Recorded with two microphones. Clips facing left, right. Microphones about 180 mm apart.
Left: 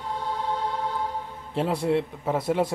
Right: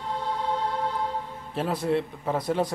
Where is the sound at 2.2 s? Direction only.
10° left (ahead or behind).